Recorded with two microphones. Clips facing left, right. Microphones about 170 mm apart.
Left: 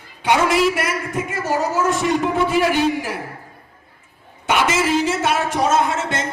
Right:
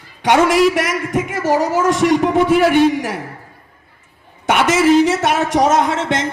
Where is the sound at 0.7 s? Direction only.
90° right.